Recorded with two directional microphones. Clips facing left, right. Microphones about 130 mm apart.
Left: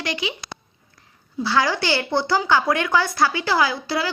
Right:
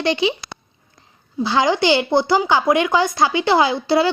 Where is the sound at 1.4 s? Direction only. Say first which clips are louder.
Right 4 dB; 20° right (ahead or behind).